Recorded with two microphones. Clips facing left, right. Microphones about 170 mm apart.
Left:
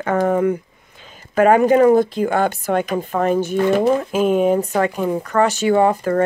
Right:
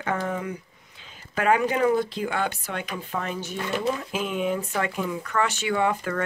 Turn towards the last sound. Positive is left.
turn(degrees=40)  # may be behind; listen again after turning